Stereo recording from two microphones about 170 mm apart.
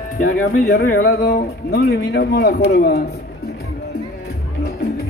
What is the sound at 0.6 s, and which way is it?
Speech, 60° left (ahead or behind).